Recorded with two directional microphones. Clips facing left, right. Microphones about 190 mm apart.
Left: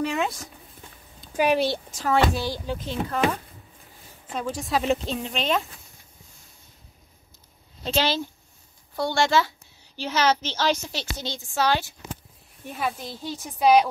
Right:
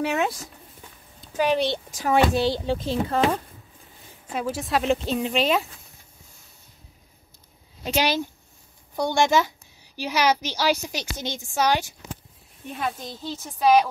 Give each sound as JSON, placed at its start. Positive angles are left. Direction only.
{"t": 1.3, "sound": "speech", "side_deg": 10}
{"t": 2.0, "sound": "speech", "side_deg": -15}
{"t": 4.3, "sound": "a woman's voice", "side_deg": -5}
{"t": 7.8, "sound": "a woman's voice", "side_deg": -15}
{"t": 12.7, "sound": "speech", "side_deg": 5}